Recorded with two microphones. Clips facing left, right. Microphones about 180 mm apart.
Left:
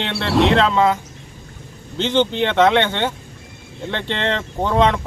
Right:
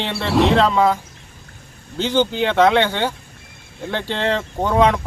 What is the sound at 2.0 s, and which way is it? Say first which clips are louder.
Speech: even; 5° right (ahead or behind).